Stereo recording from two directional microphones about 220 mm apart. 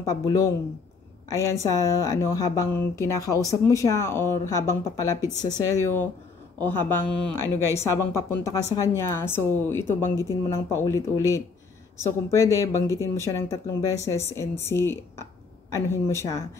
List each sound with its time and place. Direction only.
0.2 s speech: 15° left (ahead or behind)